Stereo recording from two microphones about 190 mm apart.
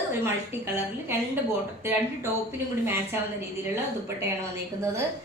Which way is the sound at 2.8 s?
10° right (ahead or behind).